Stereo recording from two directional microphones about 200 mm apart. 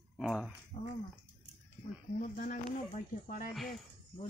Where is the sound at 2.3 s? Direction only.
40° left (ahead or behind).